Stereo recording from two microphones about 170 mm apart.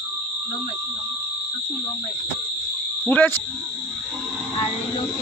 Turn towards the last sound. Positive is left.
turn(degrees=10)  # may be behind; listen again after turning